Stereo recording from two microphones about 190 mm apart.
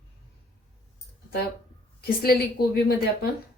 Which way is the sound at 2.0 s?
55° left (ahead or behind).